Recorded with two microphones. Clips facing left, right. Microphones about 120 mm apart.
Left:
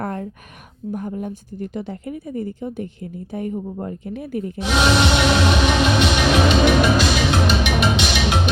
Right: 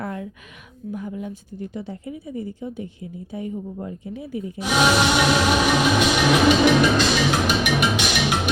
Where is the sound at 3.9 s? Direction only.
60° left (ahead or behind).